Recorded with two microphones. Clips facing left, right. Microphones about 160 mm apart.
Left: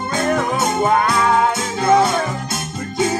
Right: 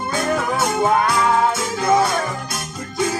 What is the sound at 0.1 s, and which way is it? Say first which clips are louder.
Music: left 2 dB; 25° left (ahead or behind).